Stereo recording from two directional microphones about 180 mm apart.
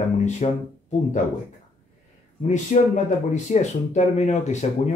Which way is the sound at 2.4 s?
40° left (ahead or behind).